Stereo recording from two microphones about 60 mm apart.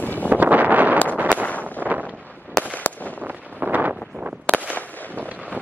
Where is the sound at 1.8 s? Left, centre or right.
Right.